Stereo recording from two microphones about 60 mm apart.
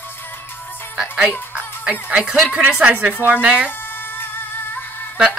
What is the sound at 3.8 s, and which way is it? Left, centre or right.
Music, left.